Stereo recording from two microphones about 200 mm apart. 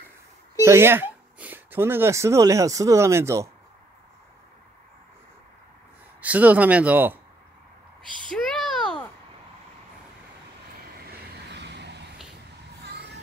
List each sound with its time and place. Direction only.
0.7 s speech: 10° right (ahead or behind)
6.2 s speech: 5° right (ahead or behind)
8.4 s a sound: 5° left (ahead or behind)
11.1 s vehicle: 55° right (ahead or behind)